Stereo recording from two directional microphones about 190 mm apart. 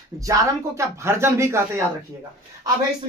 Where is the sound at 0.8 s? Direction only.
15° right (ahead or behind).